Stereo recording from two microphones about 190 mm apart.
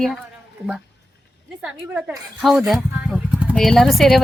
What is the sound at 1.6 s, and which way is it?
Speech, 5° right (ahead or behind).